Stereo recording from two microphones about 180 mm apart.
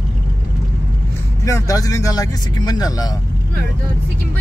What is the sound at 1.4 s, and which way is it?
Speech, 20° left (ahead or behind).